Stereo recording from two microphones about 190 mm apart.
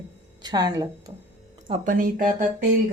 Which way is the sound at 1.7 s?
40° right (ahead or behind).